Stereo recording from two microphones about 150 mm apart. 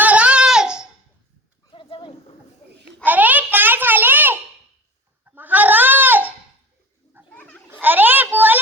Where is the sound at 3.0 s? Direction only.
10° right (ahead or behind).